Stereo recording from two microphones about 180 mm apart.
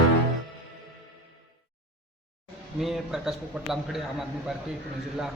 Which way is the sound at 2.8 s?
Centre (ahead or behind).